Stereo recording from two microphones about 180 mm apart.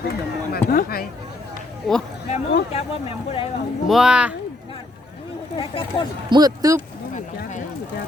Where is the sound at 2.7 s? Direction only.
30° left (ahead or behind).